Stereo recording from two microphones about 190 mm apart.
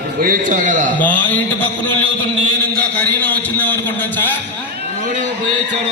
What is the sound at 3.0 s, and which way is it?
A man's voice, 10° left (ahead or behind).